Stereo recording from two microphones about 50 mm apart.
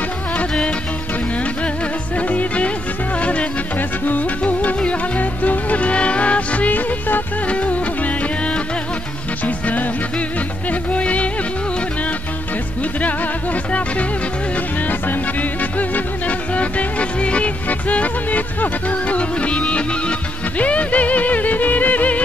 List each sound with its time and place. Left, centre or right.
0.4 s music: left
2.1 s music: left
10.7 s music: left
13.7 s music: left
15.8 s music: left